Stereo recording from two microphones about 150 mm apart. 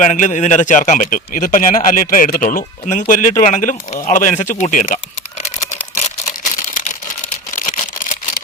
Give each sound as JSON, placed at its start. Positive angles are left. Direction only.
{"t": 0.0, "sound": "speech", "side_deg": 55}
{"t": 6.4, "sound": "camera", "side_deg": 60}
{"t": 7.5, "sound": "a sound", "side_deg": 60}